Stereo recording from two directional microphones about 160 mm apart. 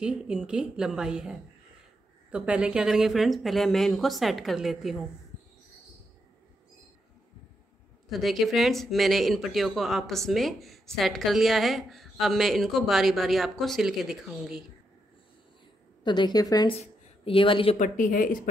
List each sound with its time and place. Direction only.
0.0 s speech: 5° right (ahead or behind)
8.1 s speech: centre (ahead or behind)
16.0 s a woman's voice: 30° left (ahead or behind)
16.8 s speech: 35° left (ahead or behind)
17.7 s speech: 55° left (ahead or behind)